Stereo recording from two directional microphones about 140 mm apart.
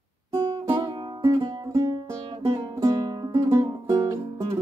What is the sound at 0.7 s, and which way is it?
Music, 25° right (ahead or behind).